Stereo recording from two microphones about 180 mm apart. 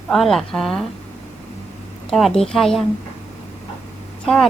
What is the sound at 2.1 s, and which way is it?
Speech, centre (ahead or behind).